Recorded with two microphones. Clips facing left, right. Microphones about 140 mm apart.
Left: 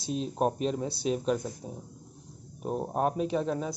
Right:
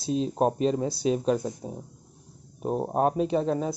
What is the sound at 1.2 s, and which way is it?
Speech, 30° right (ahead or behind).